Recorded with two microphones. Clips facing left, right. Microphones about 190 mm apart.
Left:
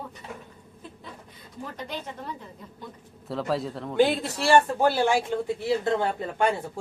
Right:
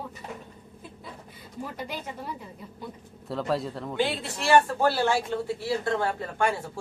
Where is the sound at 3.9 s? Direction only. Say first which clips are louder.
Left 7 dB; 45° left (ahead or behind).